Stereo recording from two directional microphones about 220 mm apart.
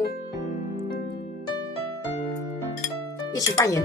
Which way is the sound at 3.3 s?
15° left (ahead or behind).